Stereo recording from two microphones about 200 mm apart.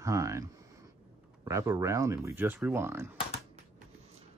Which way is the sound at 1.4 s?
15° right (ahead or behind).